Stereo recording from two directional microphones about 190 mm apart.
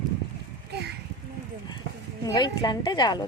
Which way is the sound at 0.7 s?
60° right (ahead or behind).